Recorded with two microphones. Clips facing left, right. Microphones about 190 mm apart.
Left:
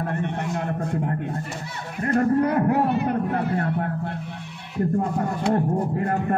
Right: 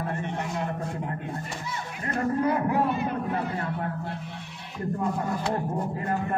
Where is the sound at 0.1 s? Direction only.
55° left (ahead or behind).